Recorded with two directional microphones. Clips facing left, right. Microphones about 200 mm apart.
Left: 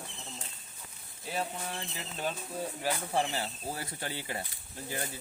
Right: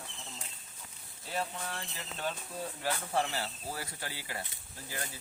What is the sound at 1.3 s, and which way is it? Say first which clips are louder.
Speech: left 1 dB; 15° left (ahead or behind).